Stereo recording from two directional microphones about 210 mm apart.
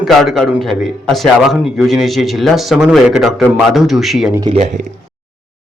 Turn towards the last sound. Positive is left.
turn(degrees=-30)  # may be behind; listen again after turning